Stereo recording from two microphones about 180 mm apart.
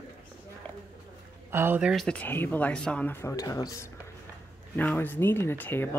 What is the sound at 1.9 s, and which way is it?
Speech, 5° left (ahead or behind).